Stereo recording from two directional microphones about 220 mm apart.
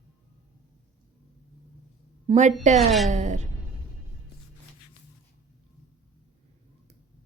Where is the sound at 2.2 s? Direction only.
30° right (ahead or behind).